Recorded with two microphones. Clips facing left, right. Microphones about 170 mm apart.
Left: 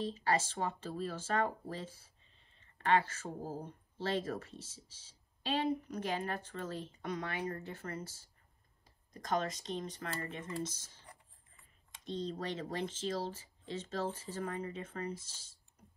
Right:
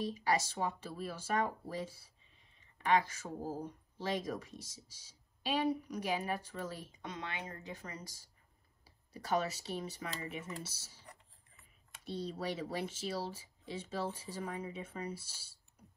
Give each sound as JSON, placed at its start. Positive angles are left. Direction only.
{"t": 0.0, "sound": "speech", "side_deg": -10}
{"t": 7.1, "sound": "a woman's voice", "side_deg": -25}